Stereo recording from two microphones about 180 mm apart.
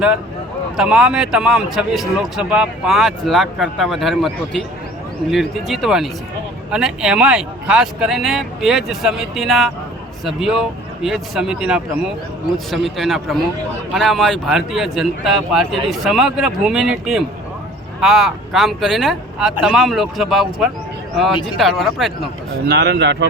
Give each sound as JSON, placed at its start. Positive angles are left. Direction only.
{"t": 0.8, "sound": "speech", "side_deg": -5}
{"t": 22.6, "sound": "a man's voice", "side_deg": -70}